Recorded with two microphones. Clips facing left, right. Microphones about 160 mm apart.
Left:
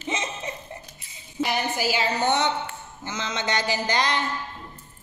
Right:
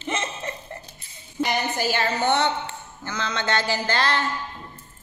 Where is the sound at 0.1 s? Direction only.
15° left (ahead or behind).